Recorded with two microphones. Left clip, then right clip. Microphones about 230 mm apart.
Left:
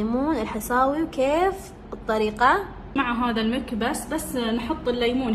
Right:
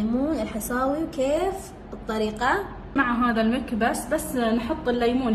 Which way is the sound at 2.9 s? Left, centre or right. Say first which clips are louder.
Right 2 dB; centre.